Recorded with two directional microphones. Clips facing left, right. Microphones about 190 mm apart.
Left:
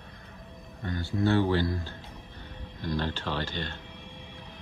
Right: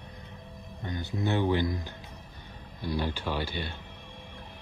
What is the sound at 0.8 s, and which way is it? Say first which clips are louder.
Speech: left 4 dB; 20° right (ahead or behind).